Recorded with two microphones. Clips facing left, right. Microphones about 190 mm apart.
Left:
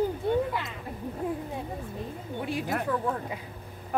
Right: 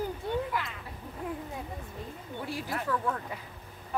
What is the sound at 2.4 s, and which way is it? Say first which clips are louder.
Speech: left 5 dB; 20° left (ahead or behind).